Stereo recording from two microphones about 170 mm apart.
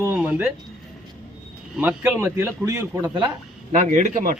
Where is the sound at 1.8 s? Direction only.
10° right (ahead or behind).